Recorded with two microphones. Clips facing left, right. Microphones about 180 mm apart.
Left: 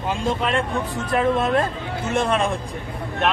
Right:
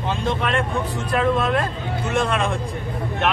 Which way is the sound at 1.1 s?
20° left (ahead or behind).